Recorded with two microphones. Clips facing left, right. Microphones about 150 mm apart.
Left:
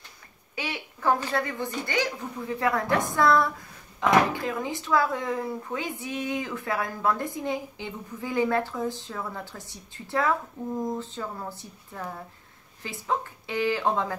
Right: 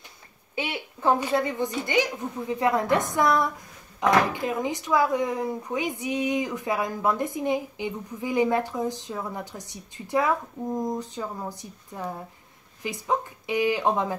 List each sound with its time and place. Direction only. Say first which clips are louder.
0.6 s a woman's voice: right 3 dB; 20° right (ahead or behind)